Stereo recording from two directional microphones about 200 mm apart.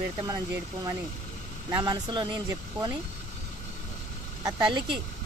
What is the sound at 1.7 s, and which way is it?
Speech, 15° right (ahead or behind).